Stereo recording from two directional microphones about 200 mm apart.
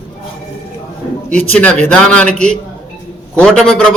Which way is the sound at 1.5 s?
5° left (ahead or behind).